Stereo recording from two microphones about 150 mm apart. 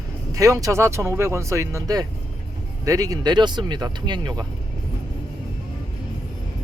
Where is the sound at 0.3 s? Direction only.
20° right (ahead or behind).